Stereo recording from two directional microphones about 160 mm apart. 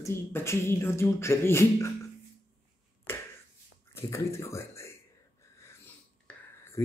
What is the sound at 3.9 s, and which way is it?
Speech, 15° left (ahead or behind).